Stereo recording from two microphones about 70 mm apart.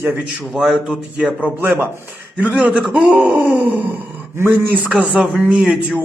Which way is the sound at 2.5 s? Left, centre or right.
Centre.